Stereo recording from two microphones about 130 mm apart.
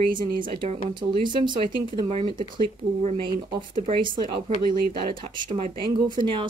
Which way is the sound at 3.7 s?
40° right (ahead or behind).